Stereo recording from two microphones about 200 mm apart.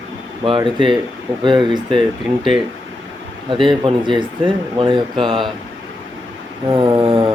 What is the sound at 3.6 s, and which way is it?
Speech, 25° right (ahead or behind).